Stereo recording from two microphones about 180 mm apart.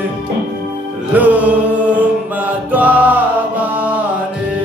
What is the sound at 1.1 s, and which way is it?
Music, 10° right (ahead or behind).